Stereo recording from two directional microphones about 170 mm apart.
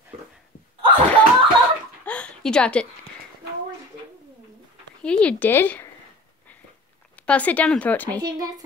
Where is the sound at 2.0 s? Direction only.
5° left (ahead or behind).